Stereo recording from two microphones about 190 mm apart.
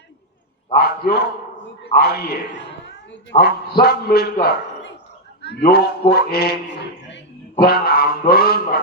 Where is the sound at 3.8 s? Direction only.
55° left (ahead or behind).